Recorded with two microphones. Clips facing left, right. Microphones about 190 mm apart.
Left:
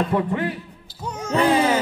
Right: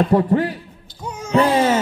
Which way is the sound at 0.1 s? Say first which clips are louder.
Right 6 dB; 40° right (ahead or behind).